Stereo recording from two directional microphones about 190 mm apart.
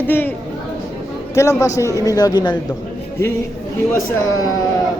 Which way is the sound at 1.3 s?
15° left (ahead or behind).